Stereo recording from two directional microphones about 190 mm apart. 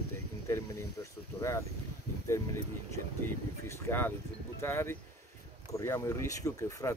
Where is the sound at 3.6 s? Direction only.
15° left (ahead or behind).